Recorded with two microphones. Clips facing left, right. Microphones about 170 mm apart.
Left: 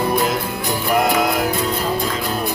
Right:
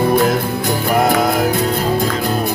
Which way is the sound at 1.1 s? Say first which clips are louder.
Right 3 dB; 40° right (ahead or behind).